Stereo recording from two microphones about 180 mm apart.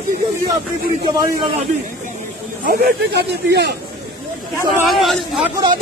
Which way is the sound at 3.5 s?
70° right (ahead or behind).